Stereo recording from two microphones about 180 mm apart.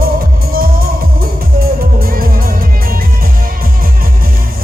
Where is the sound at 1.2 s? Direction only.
55° right (ahead or behind).